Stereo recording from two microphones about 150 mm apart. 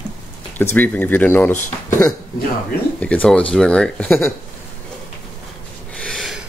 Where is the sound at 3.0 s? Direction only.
10° left (ahead or behind).